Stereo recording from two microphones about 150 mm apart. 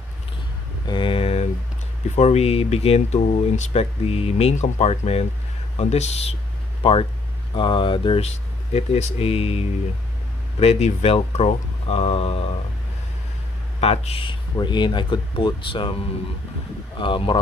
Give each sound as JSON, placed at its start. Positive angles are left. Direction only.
{"t": 0.8, "sound": "vehicle", "side_deg": 35}
{"t": 2.1, "sound": "speech", "side_deg": 45}
{"t": 13.7, "sound": "speech", "side_deg": 45}
{"t": 16.9, "sound": "speech", "side_deg": 35}